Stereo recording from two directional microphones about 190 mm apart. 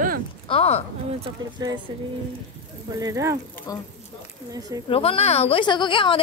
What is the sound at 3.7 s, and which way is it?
Speech, 20° left (ahead or behind).